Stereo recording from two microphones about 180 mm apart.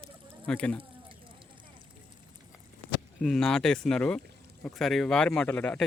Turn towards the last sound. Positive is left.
turn(degrees=5)  # may be behind; listen again after turning